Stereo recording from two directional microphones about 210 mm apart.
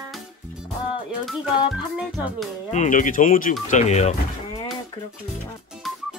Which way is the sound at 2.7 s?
35° left (ahead or behind).